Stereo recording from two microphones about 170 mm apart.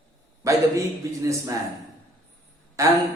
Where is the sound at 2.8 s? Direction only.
20° right (ahead or behind).